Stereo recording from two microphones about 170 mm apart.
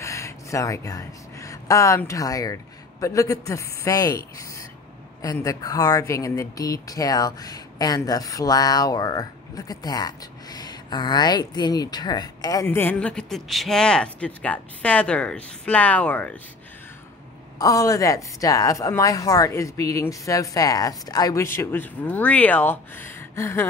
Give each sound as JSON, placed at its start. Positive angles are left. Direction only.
{"t": 0.0, "sound": "speech", "side_deg": 20}
{"t": 17.6, "sound": "speech", "side_deg": 20}